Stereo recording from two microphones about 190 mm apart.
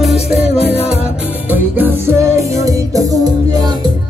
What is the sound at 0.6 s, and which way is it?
Music, 30° left (ahead or behind).